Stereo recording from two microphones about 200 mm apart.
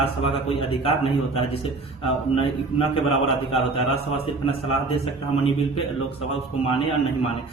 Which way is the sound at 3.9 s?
30° left (ahead or behind).